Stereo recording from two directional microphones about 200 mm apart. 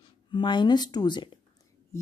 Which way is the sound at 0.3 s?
25° left (ahead or behind).